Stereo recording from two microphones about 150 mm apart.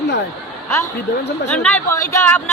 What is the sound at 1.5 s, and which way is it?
Speech, 5° left (ahead or behind).